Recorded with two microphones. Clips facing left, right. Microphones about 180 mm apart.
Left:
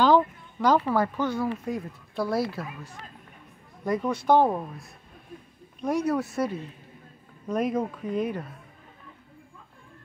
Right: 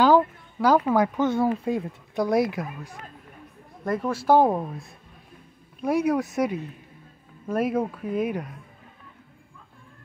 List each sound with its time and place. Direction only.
0.0 s speech: 10° right (ahead or behind)
3.8 s speech: centre (ahead or behind)
5.8 s speech: 10° right (ahead or behind)